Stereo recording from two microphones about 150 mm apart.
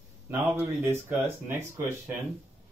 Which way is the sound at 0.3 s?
15° right (ahead or behind).